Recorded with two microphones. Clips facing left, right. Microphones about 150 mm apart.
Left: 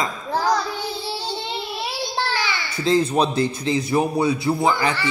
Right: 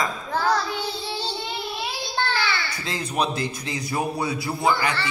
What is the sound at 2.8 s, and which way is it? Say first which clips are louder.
Speech: left 9 dB; 30° left (ahead or behind).